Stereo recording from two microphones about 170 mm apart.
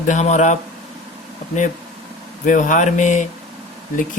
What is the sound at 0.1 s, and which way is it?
Speech, 45° left (ahead or behind).